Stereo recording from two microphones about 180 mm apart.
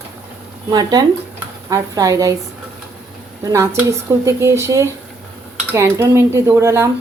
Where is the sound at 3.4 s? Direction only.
15° right (ahead or behind).